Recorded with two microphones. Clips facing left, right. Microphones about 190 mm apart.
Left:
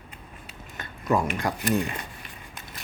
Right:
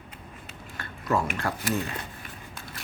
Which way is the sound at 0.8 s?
15° left (ahead or behind).